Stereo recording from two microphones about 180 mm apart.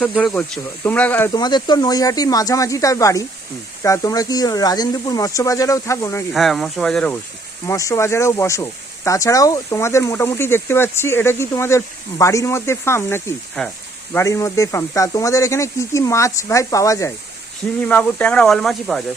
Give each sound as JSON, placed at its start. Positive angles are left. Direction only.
{"t": 0.0, "sound": "speech", "side_deg": 0}
{"t": 1.3, "sound": "speech", "side_deg": 25}
{"t": 6.3, "sound": "speech", "side_deg": 0}
{"t": 7.7, "sound": "speech", "side_deg": 15}